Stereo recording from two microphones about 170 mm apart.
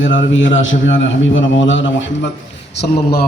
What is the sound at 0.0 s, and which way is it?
A man's voice, 90° left.